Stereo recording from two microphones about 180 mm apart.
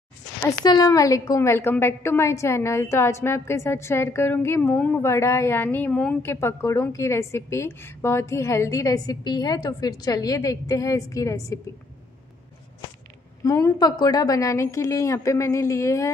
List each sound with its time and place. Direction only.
0.7 s a woman's voice: 20° left (ahead or behind)
13.4 s a woman's voice: 15° left (ahead or behind)